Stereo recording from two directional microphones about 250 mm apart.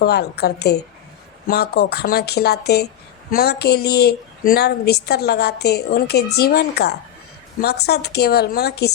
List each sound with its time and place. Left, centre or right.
0.0 s a woman's voice: left